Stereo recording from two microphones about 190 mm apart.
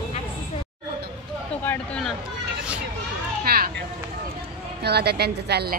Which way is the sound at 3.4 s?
55° right (ahead or behind).